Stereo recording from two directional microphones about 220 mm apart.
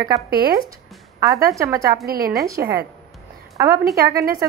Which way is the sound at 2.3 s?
15° right (ahead or behind).